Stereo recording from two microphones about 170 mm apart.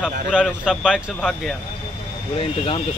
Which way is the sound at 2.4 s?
30° left (ahead or behind).